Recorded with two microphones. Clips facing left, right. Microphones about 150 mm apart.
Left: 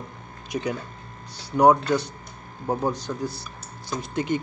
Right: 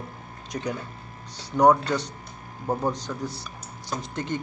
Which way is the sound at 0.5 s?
5° left (ahead or behind).